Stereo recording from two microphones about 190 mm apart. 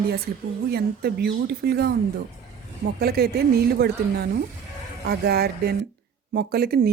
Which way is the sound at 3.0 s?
55° right (ahead or behind).